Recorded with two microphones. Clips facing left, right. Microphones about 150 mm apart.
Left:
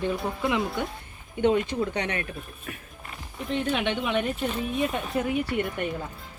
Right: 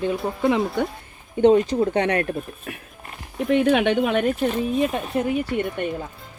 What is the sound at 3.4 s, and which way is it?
Speech, 65° right (ahead or behind).